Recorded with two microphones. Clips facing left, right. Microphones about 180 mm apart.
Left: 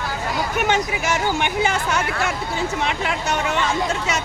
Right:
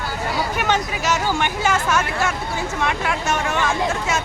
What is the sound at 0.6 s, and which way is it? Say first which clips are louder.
Speech: even; 10° left (ahead or behind).